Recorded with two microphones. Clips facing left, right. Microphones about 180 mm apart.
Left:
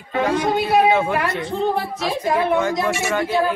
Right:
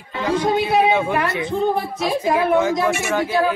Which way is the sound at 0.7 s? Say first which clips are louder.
Left 1 dB; centre (ahead or behind).